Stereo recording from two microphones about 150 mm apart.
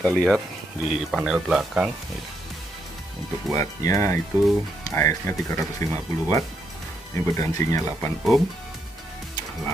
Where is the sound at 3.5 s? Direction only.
20° left (ahead or behind).